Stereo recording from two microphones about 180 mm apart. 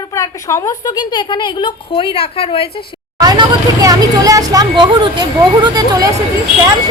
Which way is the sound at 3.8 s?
20° right (ahead or behind).